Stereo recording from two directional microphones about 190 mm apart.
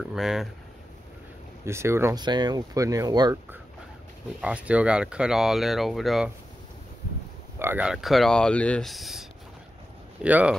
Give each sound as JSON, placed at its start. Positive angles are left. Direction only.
{"t": 0.0, "sound": "speech", "side_deg": 0}
{"t": 1.7, "sound": "speech", "side_deg": -15}
{"t": 4.4, "sound": "speech", "side_deg": -5}
{"t": 7.5, "sound": "speech", "side_deg": -10}